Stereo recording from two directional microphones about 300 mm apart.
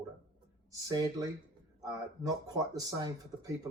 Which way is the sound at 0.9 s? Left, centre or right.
Centre.